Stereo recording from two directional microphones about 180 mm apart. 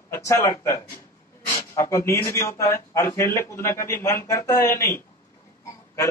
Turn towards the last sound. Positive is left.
turn(degrees=15)  # may be behind; listen again after turning